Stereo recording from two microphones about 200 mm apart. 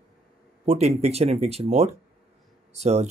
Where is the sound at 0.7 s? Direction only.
30° right (ahead or behind).